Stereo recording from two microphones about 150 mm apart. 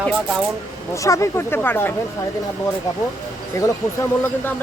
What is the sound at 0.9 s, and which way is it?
Speech, 20° left (ahead or behind).